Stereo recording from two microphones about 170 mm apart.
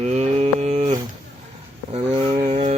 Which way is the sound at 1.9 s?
35° right (ahead or behind).